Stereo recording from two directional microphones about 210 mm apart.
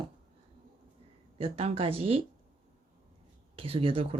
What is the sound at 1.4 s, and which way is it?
Speech, 25° right (ahead or behind).